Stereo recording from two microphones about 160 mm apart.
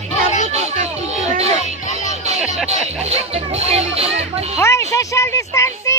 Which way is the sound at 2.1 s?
45° right (ahead or behind).